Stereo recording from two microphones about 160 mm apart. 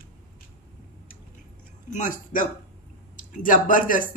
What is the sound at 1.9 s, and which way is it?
A woman's voice, 55° left (ahead or behind).